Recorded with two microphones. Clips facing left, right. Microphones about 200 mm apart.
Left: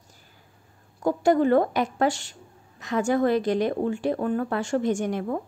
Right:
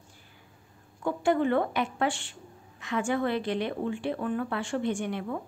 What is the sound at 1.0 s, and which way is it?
A woman's voice, 40° left (ahead or behind).